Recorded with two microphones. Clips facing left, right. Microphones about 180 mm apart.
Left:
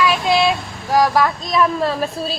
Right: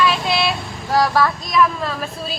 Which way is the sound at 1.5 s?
30° left (ahead or behind).